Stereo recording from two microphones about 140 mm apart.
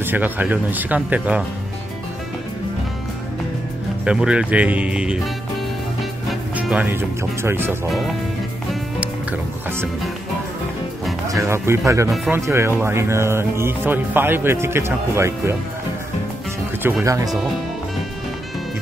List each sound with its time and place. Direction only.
0.0 s speech: 15° right (ahead or behind)
4.0 s speech: 5° right (ahead or behind)
6.5 s speech: 10° right (ahead or behind)
9.0 s music: 10° right (ahead or behind)
11.2 s speech: 20° right (ahead or behind)
17.0 s speech: 25° right (ahead or behind)